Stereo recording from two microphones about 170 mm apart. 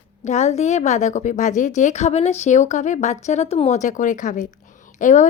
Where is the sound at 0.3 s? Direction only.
40° left (ahead or behind).